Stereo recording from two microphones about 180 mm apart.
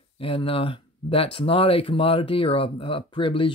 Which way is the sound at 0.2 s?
30° left (ahead or behind).